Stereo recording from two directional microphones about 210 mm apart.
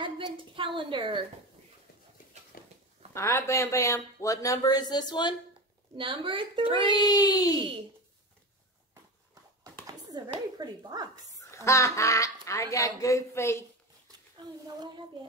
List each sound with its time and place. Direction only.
0.0 s a woman's voice: 20° right (ahead or behind)
2.5 s a sound: 45° left (ahead or behind)
3.2 s speech: 15° left (ahead or behind)
5.9 s a woman's voice: 25° right (ahead or behind)
6.9 s speech: 20° left (ahead or behind)
9.8 s a sound: 20° right (ahead or behind)
10.6 s speech: 20° right (ahead or behind)
11.5 s speech: 15° left (ahead or behind)